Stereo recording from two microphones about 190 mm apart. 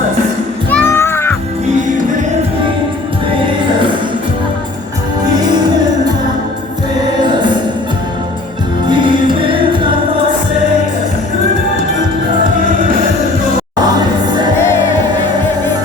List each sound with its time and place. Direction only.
0.7 s music: 10° left (ahead or behind)
8.9 s music: 25° right (ahead or behind)